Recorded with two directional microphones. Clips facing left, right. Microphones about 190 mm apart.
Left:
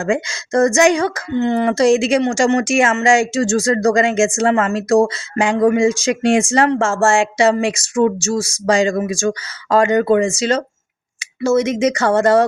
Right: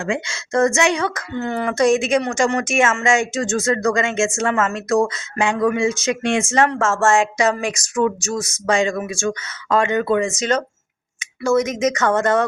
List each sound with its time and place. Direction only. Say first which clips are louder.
0.0 s speech: left 5 dB; 40° left (ahead or behind)
1.4 s speech: left 4 dB; 20° left (ahead or behind)